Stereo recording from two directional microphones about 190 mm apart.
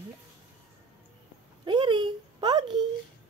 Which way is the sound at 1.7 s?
25° right (ahead or behind).